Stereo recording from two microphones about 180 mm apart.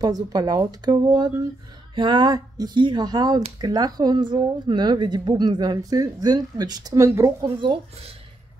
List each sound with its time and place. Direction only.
0.0 s a woman's voice: 20° right (ahead or behind)